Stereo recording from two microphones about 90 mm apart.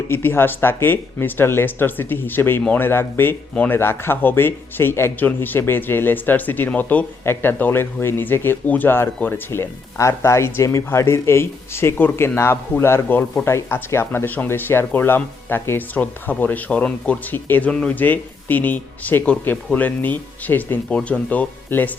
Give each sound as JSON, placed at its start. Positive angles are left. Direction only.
{"t": 0.1, "sound": "speech", "side_deg": 25}